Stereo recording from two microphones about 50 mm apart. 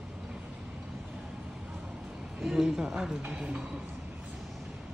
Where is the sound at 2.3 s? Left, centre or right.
Centre.